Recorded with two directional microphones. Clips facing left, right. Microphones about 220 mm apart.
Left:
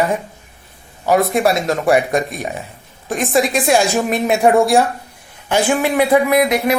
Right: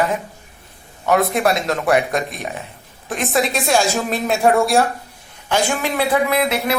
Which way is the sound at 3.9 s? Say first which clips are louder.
Left 4 dB; 15° left (ahead or behind).